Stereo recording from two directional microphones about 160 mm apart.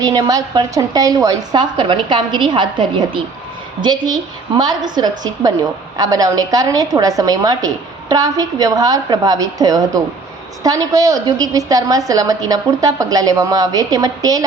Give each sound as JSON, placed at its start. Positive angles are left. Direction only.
{"t": 0.0, "sound": "a woman's voice", "side_deg": -20}